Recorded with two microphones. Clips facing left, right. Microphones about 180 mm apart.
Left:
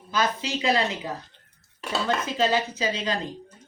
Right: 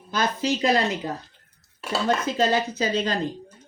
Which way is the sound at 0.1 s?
40° right (ahead or behind).